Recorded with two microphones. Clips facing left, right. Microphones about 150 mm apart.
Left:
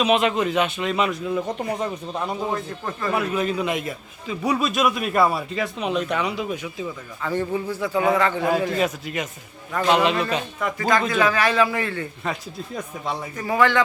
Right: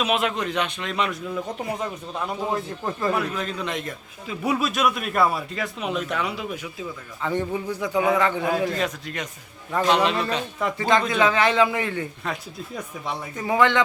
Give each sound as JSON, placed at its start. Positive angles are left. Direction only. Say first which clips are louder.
{"t": 0.0, "sound": "a man's voice", "louder": "left 4 dB", "side_deg": 0}
{"t": 2.5, "sound": "speech", "louder": "right 1 dB", "side_deg": -20}
{"t": 3.1, "sound": "a man's voice", "louder": "left 5 dB", "side_deg": 5}
{"t": 4.4, "sound": "a man's voice", "louder": "left 1 dB", "side_deg": 0}
{"t": 7.2, "sound": "a man's voice", "louder": "left 1 dB", "side_deg": -20}
{"t": 8.4, "sound": "a man's voice", "louder": "left 2 dB", "side_deg": 5}
{"t": 10.6, "sound": "speech", "louder": "right 1 dB", "side_deg": -25}
{"t": 12.2, "sound": "a man's voice", "louder": "left 2 dB", "side_deg": 0}
{"t": 13.3, "sound": "speech", "louder": "even", "side_deg": -20}